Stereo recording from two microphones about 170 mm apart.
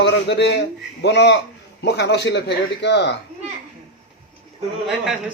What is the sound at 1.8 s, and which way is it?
A man's voice, 80° left.